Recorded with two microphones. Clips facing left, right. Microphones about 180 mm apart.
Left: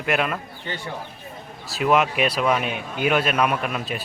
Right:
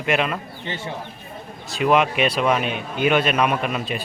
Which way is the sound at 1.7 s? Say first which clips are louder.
Right 1 dB; centre (ahead or behind).